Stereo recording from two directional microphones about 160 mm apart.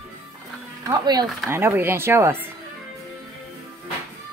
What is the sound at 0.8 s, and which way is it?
Music, 25° right (ahead or behind).